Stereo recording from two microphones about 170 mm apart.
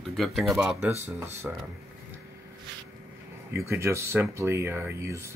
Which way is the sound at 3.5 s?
15° right (ahead or behind).